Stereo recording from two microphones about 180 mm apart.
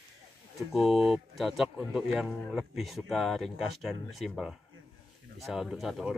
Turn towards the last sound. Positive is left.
turn(degrees=0)  # may be behind; listen again after turning